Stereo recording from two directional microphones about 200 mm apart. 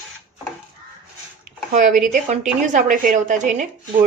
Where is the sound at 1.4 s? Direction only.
40° right (ahead or behind).